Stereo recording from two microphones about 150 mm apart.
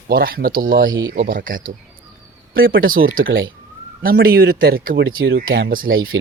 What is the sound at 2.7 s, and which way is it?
Speech, 75° right (ahead or behind).